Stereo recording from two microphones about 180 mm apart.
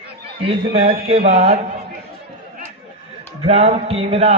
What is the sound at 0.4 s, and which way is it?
A man's voice, 35° right (ahead or behind).